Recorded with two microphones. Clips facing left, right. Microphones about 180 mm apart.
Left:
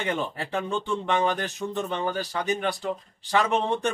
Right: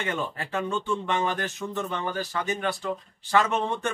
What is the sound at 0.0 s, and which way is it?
Speech, 20° left (ahead or behind).